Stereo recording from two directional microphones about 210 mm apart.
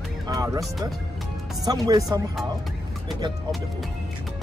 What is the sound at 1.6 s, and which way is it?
Speech, 20° right (ahead or behind).